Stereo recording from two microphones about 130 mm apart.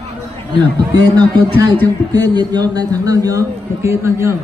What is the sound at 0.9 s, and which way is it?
A man's voice, 30° right (ahead or behind).